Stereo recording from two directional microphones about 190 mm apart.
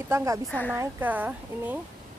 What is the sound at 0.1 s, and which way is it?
Speech, 15° right (ahead or behind).